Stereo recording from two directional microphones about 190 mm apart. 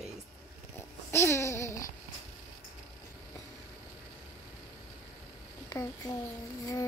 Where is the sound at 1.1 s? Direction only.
15° left (ahead or behind).